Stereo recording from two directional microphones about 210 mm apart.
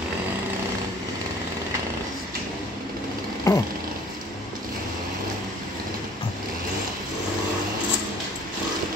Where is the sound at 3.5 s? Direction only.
15° left (ahead or behind).